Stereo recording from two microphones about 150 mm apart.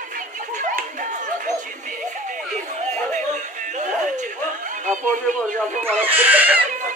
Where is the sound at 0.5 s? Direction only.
55° right (ahead or behind).